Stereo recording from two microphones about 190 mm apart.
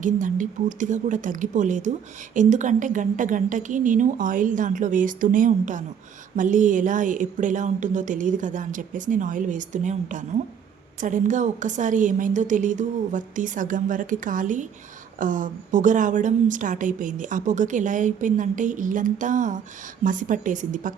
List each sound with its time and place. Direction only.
0.0 s a woman's voice: 45° right (ahead or behind)